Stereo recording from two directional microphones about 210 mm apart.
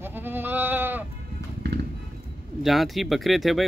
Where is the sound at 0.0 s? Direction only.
10° right (ahead or behind).